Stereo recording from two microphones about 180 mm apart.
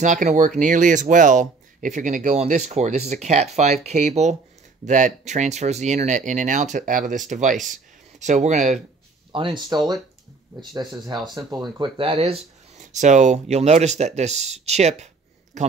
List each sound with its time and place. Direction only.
0.0 s speech: 45° right (ahead or behind)
9.3 s speech: 25° right (ahead or behind)
11.2 s speech: 25° right (ahead or behind); by 15.7 s 40° right (ahead or behind)